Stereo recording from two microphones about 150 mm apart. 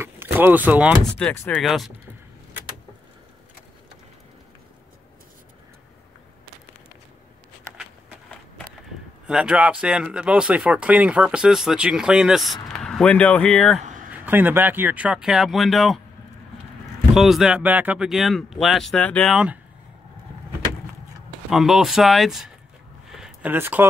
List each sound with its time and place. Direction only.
0.0 s vehicle: 15° right (ahead or behind)
1.3 s speech: 15° left (ahead or behind)
1.6 s speech: centre (ahead or behind)
9.3 s speech: 5° right (ahead or behind)
14.1 s speech: 10° right (ahead or behind)
17.1 s speech: centre (ahead or behind)
21.5 s speech: centre (ahead or behind)
23.1 s a sound: 5° right (ahead or behind)